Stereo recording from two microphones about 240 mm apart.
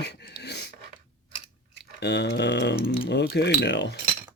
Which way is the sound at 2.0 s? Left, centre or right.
Left.